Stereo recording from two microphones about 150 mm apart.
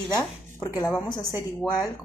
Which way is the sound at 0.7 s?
25° left (ahead or behind).